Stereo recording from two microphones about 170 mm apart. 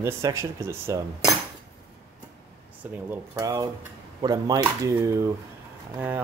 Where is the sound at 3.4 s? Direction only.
20° right (ahead or behind).